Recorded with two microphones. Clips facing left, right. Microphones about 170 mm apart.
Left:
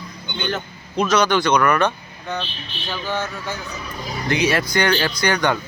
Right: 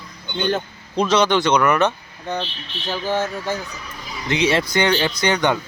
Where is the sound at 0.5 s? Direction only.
30° right (ahead or behind).